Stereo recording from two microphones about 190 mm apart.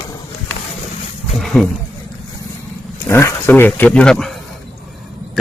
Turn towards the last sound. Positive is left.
turn(degrees=5)  # may be behind; listen again after turning